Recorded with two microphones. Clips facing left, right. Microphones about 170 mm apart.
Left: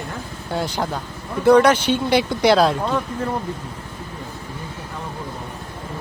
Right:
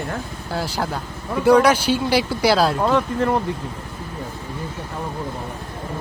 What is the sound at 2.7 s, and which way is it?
Speech, 65° right (ahead or behind).